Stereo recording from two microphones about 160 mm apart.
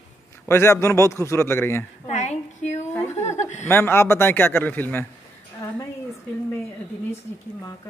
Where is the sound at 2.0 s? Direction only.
45° left (ahead or behind).